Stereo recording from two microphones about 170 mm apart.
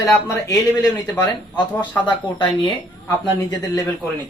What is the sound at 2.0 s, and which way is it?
Speech, 30° left (ahead or behind).